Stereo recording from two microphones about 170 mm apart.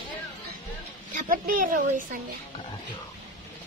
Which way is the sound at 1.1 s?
55° right (ahead or behind).